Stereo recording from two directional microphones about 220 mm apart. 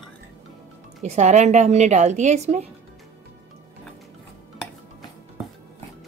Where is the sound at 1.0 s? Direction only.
30° right (ahead or behind).